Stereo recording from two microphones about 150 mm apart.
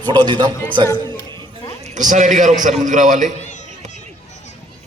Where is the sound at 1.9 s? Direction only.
55° right (ahead or behind).